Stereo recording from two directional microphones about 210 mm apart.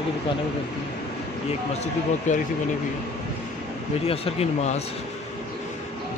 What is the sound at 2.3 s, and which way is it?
Speech, 35° left (ahead or behind).